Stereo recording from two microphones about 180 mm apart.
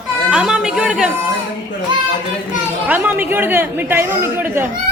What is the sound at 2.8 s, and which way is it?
Speech, 10° right (ahead or behind).